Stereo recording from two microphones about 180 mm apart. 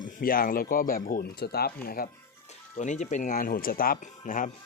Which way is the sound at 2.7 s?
40° left (ahead or behind).